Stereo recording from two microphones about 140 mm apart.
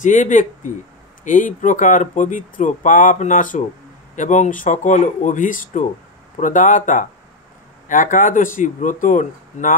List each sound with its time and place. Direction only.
0.0 s speech: 65° left (ahead or behind)